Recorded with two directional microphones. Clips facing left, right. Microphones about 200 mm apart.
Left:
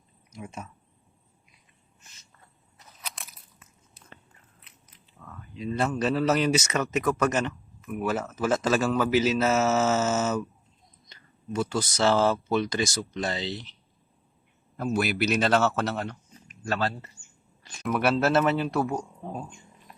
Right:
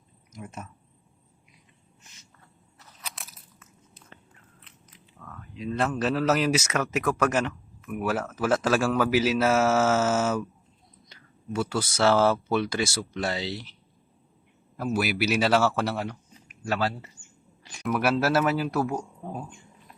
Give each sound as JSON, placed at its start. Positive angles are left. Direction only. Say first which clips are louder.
{"t": 0.3, "sound": "speech", "louder": "left 1 dB", "side_deg": 0}
{"t": 3.0, "sound": "biting", "louder": "even", "side_deg": 0}
{"t": 5.2, "sound": "speech", "louder": "even", "side_deg": 5}
{"t": 14.8, "sound": "speech", "louder": "even", "side_deg": -5}
{"t": 17.6, "sound": "a sound", "louder": "right 1 dB", "side_deg": -15}
{"t": 17.8, "sound": "speech", "louder": "even", "side_deg": 0}